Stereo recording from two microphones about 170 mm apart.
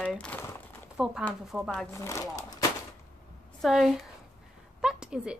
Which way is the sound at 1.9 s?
15° left (ahead or behind).